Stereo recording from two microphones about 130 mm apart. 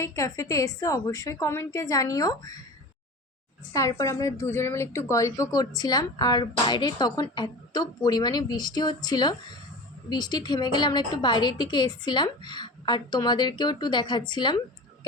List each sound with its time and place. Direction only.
0.0 s a woman's voice: 25° left (ahead or behind)
3.7 s a woman's voice: 25° left (ahead or behind)